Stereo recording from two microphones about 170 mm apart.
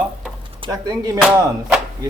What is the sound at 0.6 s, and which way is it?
Speech, 20° right (ahead or behind).